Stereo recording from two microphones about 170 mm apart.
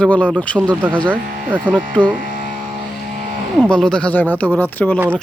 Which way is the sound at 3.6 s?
5° left (ahead or behind).